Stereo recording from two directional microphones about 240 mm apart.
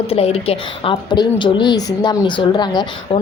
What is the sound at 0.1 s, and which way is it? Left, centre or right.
Speech, left.